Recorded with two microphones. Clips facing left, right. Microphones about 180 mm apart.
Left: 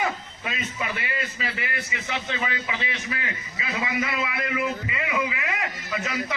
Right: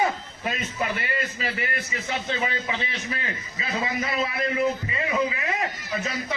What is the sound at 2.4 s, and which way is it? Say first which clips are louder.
A man's voice: right 2 dB; 30° right (ahead or behind).